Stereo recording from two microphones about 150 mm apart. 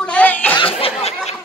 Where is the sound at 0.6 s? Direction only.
40° left (ahead or behind).